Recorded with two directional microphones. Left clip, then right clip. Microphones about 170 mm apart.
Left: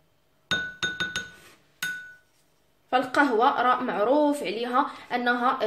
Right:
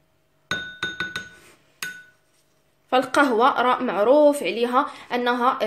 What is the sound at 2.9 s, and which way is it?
Speech, 40° right (ahead or behind).